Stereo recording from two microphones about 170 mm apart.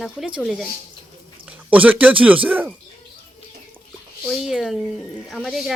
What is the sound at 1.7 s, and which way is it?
Speech, 10° right (ahead or behind).